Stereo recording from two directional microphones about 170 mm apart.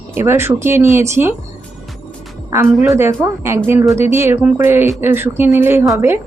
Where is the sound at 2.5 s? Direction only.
15° right (ahead or behind).